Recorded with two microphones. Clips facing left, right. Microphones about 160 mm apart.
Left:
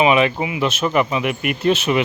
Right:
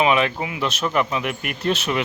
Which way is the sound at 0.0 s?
5° left (ahead or behind).